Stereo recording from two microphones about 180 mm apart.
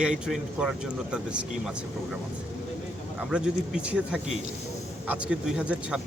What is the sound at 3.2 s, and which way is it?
Speech, 5° right (ahead or behind).